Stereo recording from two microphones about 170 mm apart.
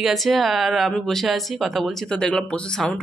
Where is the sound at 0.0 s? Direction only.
Centre (ahead or behind).